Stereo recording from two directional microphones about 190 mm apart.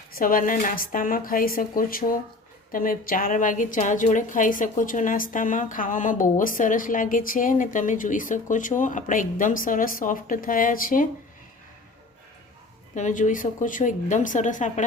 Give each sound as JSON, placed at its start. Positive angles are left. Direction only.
{"t": 0.2, "sound": "a woman's voice", "side_deg": 45}
{"t": 12.9, "sound": "a woman's voice", "side_deg": 40}